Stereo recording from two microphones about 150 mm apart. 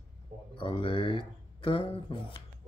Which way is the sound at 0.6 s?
35° left (ahead or behind).